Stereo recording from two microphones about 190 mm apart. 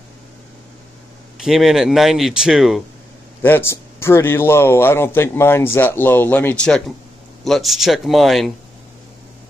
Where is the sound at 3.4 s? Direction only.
10° left (ahead or behind).